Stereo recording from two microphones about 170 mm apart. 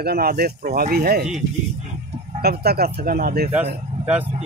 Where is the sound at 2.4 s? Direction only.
65° right (ahead or behind).